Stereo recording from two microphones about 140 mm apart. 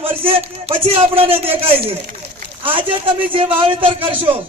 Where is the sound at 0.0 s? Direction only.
40° right (ahead or behind).